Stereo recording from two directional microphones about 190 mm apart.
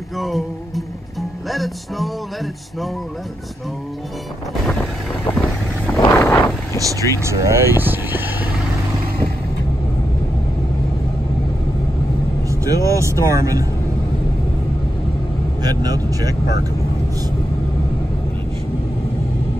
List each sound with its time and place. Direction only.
0.2 s music: centre (ahead or behind)
5.9 s vehicle: 15° left (ahead or behind)
6.8 s speech: 15° right (ahead or behind)
12.4 s speech: 15° right (ahead or behind)
15.6 s speech: 20° right (ahead or behind)